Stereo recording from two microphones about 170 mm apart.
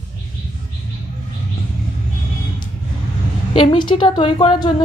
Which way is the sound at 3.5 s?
25° left (ahead or behind).